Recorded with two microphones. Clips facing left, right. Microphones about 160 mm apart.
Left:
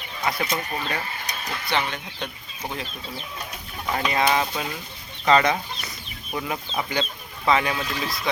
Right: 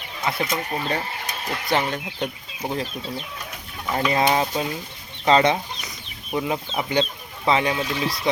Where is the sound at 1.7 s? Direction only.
40° right (ahead or behind).